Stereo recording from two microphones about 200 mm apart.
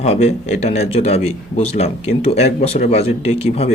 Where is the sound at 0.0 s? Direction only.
30° left (ahead or behind).